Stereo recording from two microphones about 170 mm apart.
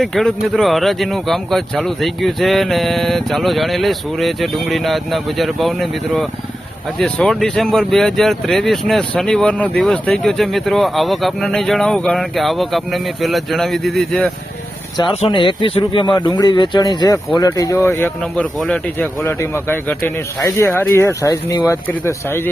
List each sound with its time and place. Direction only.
0.0 s speech: centre (ahead or behind)
14.9 s speech: 35° left (ahead or behind); by 22.4 s 15° left (ahead or behind)